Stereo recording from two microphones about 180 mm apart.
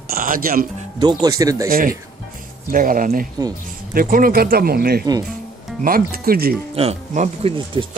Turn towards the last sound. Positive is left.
turn(degrees=-30)  # may be behind; listen again after turning